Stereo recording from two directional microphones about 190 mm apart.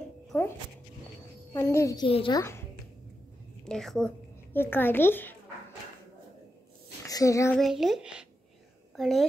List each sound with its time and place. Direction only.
0.3 s music: 10° left (ahead or behind)
1.5 s a woman's voice: 15° left (ahead or behind)
2.0 s a woman's voice: 30° left (ahead or behind)
2.3 s a woman's voice: 15° left (ahead or behind)
3.6 s a woman's voice: centre (ahead or behind)
7.1 s a child's voice: 20° left (ahead or behind)
7.5 s speech: centre (ahead or behind)